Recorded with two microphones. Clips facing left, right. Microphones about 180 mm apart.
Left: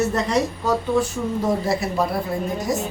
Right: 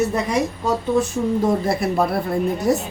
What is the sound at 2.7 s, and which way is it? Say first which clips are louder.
Speech: right 4 dB; 65° right (ahead or behind).